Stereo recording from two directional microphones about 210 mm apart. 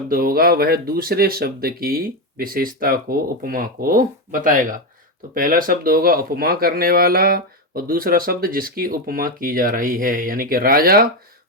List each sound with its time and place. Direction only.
0.1 s speech: 45° right (ahead or behind)